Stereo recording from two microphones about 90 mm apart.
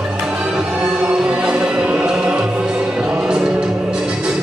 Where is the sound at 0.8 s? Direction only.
10° right (ahead or behind).